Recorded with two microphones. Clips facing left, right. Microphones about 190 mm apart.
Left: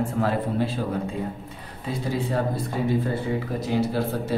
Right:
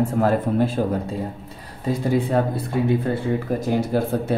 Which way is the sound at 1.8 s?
55° right (ahead or behind).